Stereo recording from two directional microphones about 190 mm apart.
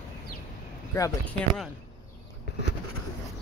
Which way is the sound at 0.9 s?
15° left (ahead or behind).